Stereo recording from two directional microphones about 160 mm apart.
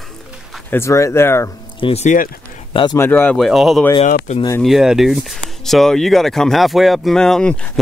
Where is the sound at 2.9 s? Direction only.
15° left (ahead or behind).